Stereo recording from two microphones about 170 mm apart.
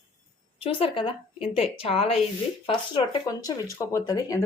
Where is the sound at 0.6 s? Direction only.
35° left (ahead or behind).